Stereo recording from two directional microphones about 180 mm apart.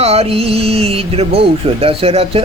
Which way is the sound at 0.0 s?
35° right (ahead or behind).